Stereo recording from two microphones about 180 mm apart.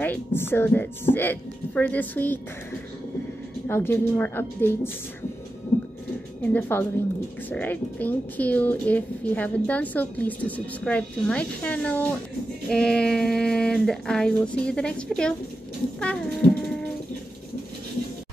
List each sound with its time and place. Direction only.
0.0 s a woman's voice: 10° left (ahead or behind)
3.6 s a woman's voice: 10° left (ahead or behind)
5.7 s a sound: 35° left (ahead or behind)
6.5 s a woman's voice: 10° left (ahead or behind)
16.0 s music: 5° left (ahead or behind)